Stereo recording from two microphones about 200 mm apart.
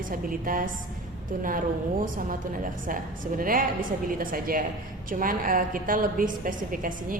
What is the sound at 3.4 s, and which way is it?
Speech, 45° right (ahead or behind).